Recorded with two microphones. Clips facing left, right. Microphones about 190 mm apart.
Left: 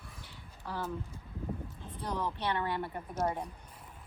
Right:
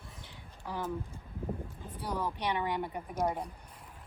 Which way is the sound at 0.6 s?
10° right (ahead or behind).